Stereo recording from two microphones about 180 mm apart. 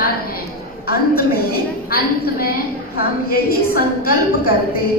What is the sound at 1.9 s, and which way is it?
A woman's voice, 55° left (ahead or behind).